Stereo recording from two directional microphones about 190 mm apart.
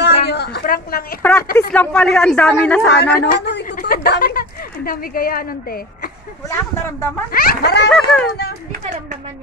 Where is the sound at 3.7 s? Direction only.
45° left (ahead or behind).